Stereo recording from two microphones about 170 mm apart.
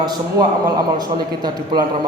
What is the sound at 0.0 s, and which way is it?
A man's voice, 25° right (ahead or behind).